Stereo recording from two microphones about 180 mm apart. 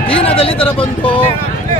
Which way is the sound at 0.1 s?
30° left (ahead or behind).